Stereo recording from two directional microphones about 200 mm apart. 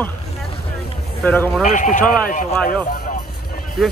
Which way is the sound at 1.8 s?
40° left (ahead or behind).